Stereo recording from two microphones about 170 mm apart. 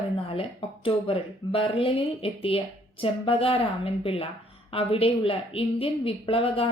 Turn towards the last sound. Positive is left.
turn(degrees=35)  # may be behind; listen again after turning